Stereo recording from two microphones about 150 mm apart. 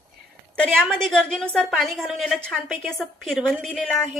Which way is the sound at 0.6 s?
5° left (ahead or behind).